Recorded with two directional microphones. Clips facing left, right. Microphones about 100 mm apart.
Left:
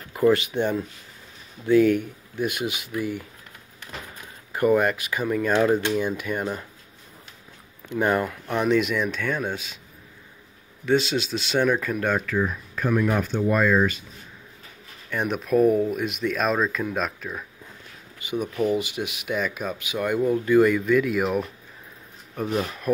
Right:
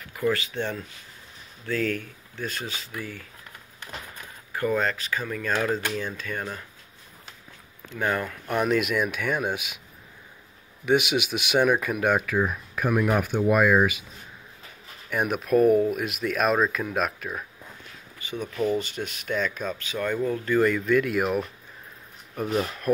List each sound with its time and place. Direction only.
0.1 s speech: 20° left (ahead or behind)
4.5 s speech: 20° left (ahead or behind)
7.9 s speech: 15° left (ahead or behind)
8.5 s speech: 5° right (ahead or behind)
10.9 s speech: 15° right (ahead or behind)
15.0 s speech: 5° right (ahead or behind)
18.2 s speech: 15° left (ahead or behind)